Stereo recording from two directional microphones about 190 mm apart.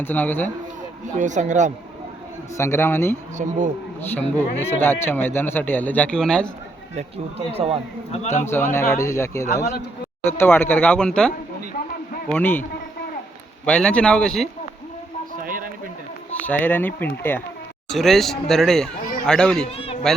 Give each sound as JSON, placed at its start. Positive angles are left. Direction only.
{"t": 0.0, "sound": "speech", "side_deg": 10}
{"t": 1.0, "sound": "speech", "side_deg": -40}
{"t": 2.6, "sound": "speech", "side_deg": 15}
{"t": 3.3, "sound": "speech", "side_deg": -40}
{"t": 4.6, "sound": "speech", "side_deg": 10}
{"t": 6.9, "sound": "speech", "side_deg": -30}
{"t": 8.1, "sound": "a man's voice", "side_deg": 35}
{"t": 8.4, "sound": "speech", "side_deg": 10}
{"t": 13.7, "sound": "speech", "side_deg": 5}
{"t": 15.4, "sound": "a sound", "side_deg": -45}
{"t": 16.3, "sound": "speech", "side_deg": 10}
{"t": 19.6, "sound": "a sound", "side_deg": 30}